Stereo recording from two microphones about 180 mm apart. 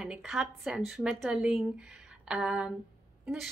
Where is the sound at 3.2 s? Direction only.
5° right (ahead or behind).